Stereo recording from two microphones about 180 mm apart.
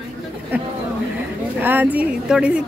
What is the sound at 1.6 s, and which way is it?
A woman's voice, 10° right (ahead or behind).